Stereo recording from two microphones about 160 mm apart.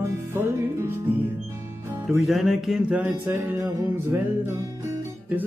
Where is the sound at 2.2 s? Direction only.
Centre (ahead or behind).